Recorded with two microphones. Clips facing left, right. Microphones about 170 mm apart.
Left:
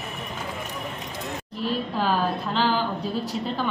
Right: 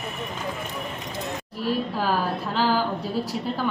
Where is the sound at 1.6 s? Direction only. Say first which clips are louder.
Right 1 dB; 5° right (ahead or behind).